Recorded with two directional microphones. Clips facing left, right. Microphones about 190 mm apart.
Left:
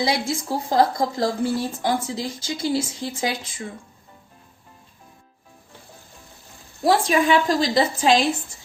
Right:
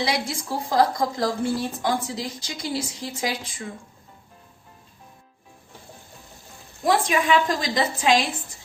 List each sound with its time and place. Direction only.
0.0 s speech: 25° left (ahead or behind)
6.8 s a woman's voice: 35° left (ahead or behind)